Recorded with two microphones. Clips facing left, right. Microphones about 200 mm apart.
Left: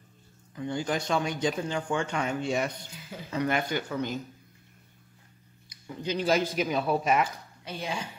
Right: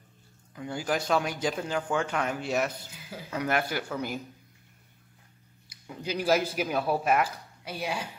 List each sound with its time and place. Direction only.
0.6 s speech: 5° right (ahead or behind)
5.7 s speech: 10° right (ahead or behind)